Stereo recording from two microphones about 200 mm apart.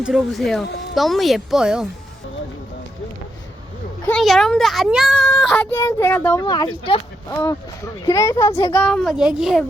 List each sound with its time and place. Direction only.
0.0 s a child's voice: centre (ahead or behind)
4.1 s a child's voice: centre (ahead or behind)
5.7 s speech: 15° left (ahead or behind)
6.4 s speech: 20° left (ahead or behind)
7.3 s speech: 15° left (ahead or behind)
8.8 s a child's voice: centre (ahead or behind)